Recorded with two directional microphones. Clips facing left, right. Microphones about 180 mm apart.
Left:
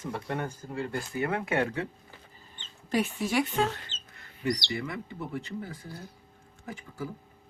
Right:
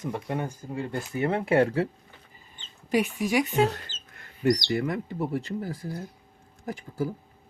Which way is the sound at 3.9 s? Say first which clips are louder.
Even; 25° left (ahead or behind).